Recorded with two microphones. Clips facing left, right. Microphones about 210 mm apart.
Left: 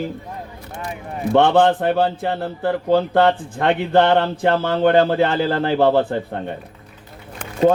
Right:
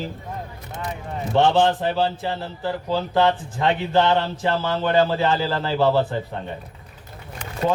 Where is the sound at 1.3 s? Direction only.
60° left (ahead or behind).